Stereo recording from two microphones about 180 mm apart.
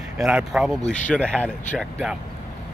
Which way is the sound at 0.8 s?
40° left (ahead or behind).